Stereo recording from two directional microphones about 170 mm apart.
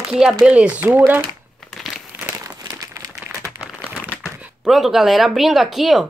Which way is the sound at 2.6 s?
20° right (ahead or behind).